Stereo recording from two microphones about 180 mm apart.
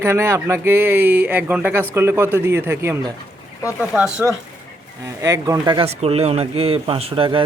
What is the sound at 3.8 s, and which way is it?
Speech, 5° right (ahead or behind).